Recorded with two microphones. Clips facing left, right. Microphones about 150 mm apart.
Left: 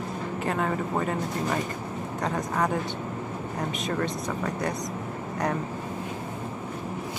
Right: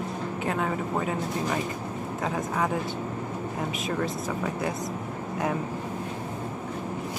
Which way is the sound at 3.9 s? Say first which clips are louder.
Even; 5° right (ahead or behind).